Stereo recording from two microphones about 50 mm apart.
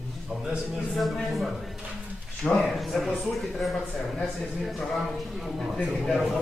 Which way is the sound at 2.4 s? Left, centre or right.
Left.